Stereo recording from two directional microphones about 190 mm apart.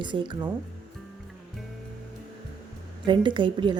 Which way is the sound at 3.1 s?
25° right (ahead or behind).